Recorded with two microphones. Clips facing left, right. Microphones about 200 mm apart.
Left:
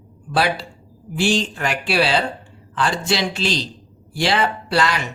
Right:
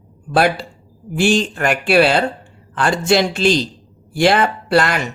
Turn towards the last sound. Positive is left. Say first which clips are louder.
# right 4 dB
turn(degrees=-50)  # may be behind; listen again after turning